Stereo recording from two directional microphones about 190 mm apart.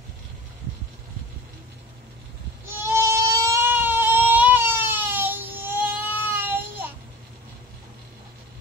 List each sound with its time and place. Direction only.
2.8 s goat: 15° right (ahead or behind)